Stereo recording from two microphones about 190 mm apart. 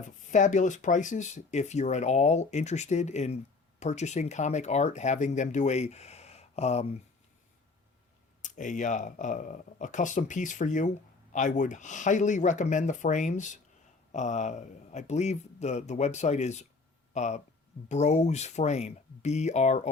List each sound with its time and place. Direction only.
0.3 s speech: 40° left (ahead or behind)
8.4 s speech: 40° left (ahead or behind)